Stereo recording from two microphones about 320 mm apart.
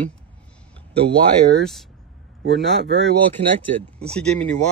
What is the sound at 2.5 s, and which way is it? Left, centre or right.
Speech, centre.